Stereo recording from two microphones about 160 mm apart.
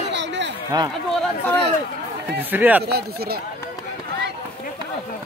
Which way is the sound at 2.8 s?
75° right (ahead or behind).